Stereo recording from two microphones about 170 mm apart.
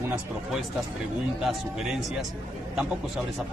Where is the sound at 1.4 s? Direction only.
Centre (ahead or behind).